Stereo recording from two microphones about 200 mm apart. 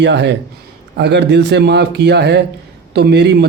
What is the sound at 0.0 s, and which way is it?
A man's voice, 60° right (ahead or behind).